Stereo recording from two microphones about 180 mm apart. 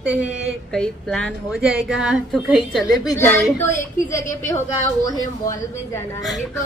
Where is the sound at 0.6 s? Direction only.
5° left (ahead or behind).